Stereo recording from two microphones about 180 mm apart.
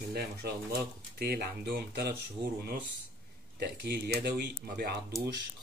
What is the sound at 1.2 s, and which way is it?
Speech, 60° right (ahead or behind).